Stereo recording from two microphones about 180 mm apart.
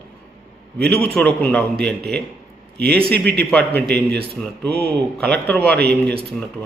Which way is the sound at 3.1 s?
65° right (ahead or behind).